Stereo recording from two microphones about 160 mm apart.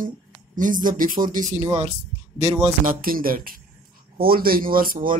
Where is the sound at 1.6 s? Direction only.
40° right (ahead or behind).